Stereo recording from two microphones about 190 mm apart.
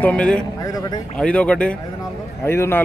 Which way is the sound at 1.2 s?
5° left (ahead or behind).